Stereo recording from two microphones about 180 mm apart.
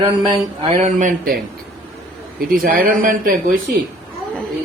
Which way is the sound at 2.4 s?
55° right (ahead or behind).